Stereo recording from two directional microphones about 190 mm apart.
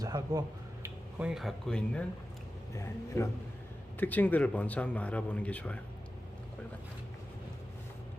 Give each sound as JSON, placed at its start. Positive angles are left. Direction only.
{"t": 0.0, "sound": "a sound", "side_deg": -20}
{"t": 1.2, "sound": "speech", "side_deg": 0}
{"t": 3.1, "sound": "speech", "side_deg": 10}